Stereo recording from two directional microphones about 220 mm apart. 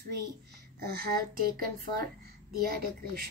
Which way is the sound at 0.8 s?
45° right (ahead or behind).